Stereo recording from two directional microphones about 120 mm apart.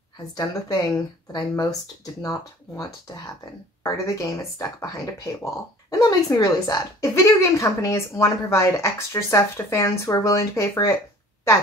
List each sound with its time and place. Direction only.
0.3 s a woman's voice: 35° left (ahead or behind)